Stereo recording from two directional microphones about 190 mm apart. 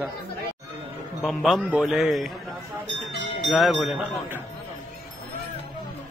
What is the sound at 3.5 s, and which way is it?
Speech, centre (ahead or behind).